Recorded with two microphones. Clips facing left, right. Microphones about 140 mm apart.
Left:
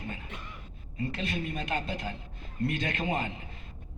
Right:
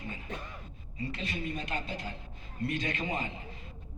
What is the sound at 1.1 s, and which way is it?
A man's voice, 60° left (ahead or behind).